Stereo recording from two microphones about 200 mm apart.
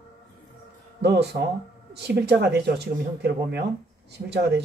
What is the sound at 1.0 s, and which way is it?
Speech, 55° right (ahead or behind).